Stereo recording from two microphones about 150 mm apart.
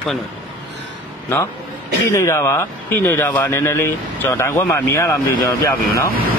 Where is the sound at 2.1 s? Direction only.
20° left (ahead or behind).